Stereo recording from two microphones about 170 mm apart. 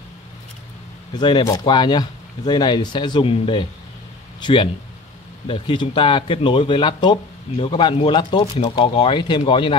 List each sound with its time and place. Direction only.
1.1 s speech: 25° left (ahead or behind)